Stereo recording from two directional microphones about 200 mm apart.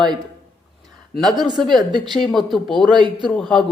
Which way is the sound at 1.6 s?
Centre (ahead or behind).